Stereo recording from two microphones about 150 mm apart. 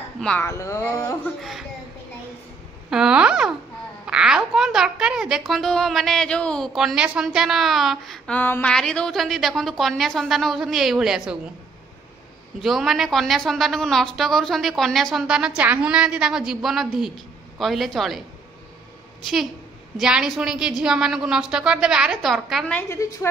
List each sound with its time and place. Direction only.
0.2 s a woman's voice: 5° left (ahead or behind)
0.5 s speech: 20° left (ahead or behind)
1.4 s a woman's voice: centre (ahead or behind)
2.9 s a woman's voice: 5° right (ahead or behind)
8.4 s a woman's voice: 10° left (ahead or behind); by 11.3 s 5° right (ahead or behind)
12.6 s a woman's voice: centre (ahead or behind)
20.0 s a woman's voice: 5° right (ahead or behind)
22.8 s speech: 20° left (ahead or behind)